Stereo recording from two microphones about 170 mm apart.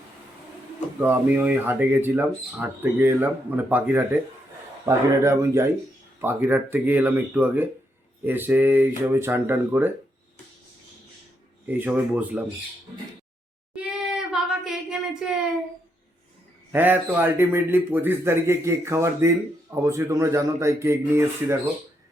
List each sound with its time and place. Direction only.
0.9 s a man's voice: 10° right (ahead or behind)
11.6 s a man's voice: 10° right (ahead or behind)
13.7 s a sound: 5° right (ahead or behind)
16.7 s a man's voice: 10° right (ahead or behind)